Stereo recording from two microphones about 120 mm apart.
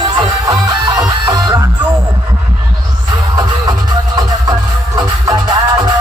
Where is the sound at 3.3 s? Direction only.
35° right (ahead or behind).